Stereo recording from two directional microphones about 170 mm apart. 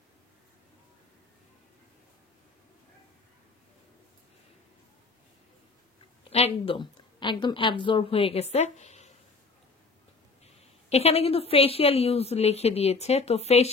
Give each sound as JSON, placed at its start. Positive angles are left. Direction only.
{"t": 6.3, "sound": "a woman's voice", "side_deg": 35}
{"t": 10.9, "sound": "a woman's voice", "side_deg": 35}